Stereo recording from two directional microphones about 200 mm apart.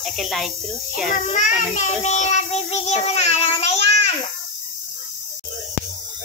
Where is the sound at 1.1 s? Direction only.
40° left (ahead or behind).